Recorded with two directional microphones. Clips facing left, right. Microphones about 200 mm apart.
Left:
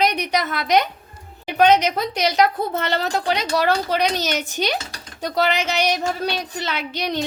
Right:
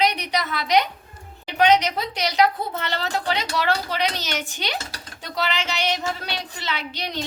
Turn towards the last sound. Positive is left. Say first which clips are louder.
# left 5 dB
turn(degrees=50)  # may be behind; listen again after turning